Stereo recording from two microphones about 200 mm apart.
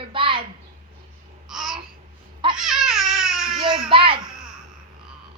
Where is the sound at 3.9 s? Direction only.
25° right (ahead or behind).